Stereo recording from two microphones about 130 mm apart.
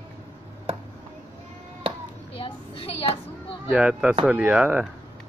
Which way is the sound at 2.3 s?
45° left (ahead or behind).